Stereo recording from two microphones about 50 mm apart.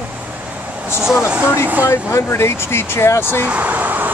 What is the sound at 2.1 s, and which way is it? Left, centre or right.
Speech, left.